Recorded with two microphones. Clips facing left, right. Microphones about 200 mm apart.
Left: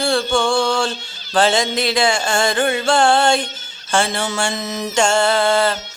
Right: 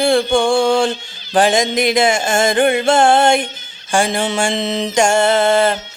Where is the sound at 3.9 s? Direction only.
15° right (ahead or behind).